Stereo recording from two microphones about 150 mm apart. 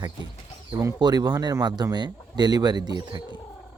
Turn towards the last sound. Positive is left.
turn(degrees=-30)  # may be behind; listen again after turning